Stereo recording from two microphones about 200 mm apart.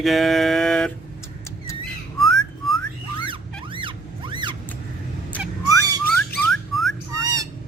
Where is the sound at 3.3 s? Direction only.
25° right (ahead or behind).